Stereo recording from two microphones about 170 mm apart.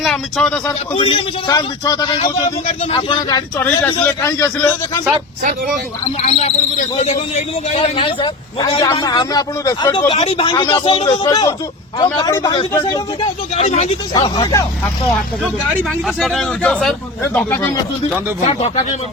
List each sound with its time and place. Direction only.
0.0 s speech: 5° left (ahead or behind)
0.9 s a man's voice: 30° left (ahead or behind)
1.5 s a man's voice: 20° left (ahead or behind)
2.1 s a man's voice: 35° left (ahead or behind)
3.6 s a man's voice: 10° left (ahead or behind)
6.2 s a man's voice: 40° left (ahead or behind); by 13.0 s 20° left (ahead or behind)
13.6 s a man's voice: 40° left (ahead or behind)
14.1 s a man's voice: 25° left (ahead or behind)
16.0 s speech: centre (ahead or behind)
17.3 s a man's voice: 15° left (ahead or behind)
18.4 s speech: 45° left (ahead or behind)